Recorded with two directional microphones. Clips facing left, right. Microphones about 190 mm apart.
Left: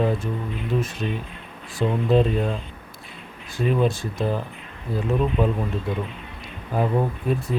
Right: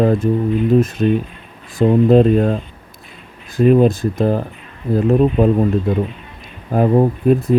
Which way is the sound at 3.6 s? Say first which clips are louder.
Right 10 dB; 50° right (ahead or behind).